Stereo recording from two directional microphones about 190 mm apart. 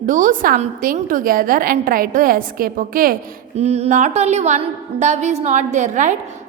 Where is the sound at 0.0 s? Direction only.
45° right (ahead or behind).